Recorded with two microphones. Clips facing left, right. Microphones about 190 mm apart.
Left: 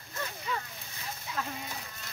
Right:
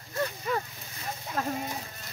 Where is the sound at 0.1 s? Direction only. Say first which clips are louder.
Right 7 dB; 40° right (ahead or behind).